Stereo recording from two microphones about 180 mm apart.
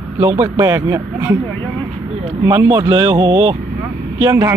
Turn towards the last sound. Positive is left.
turn(degrees=-20)  # may be behind; listen again after turning